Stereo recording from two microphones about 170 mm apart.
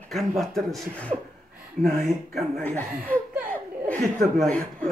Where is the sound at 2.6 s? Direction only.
10° left (ahead or behind).